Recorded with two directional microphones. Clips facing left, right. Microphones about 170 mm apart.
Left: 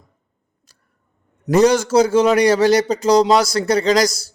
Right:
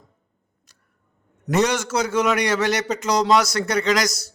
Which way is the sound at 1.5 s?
35° left (ahead or behind).